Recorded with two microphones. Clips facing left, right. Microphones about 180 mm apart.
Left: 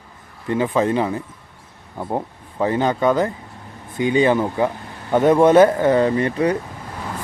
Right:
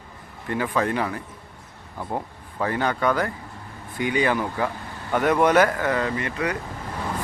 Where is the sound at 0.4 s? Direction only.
20° left (ahead or behind).